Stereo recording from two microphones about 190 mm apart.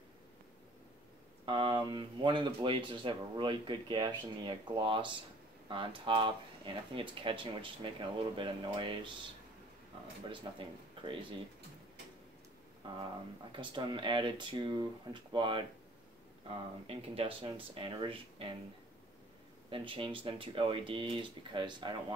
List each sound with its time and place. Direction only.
1.4 s speech: 25° right (ahead or behind)
10.3 s speech: 25° right (ahead or behind)
13.5 s speech: 25° right (ahead or behind)
19.7 s speech: 25° right (ahead or behind)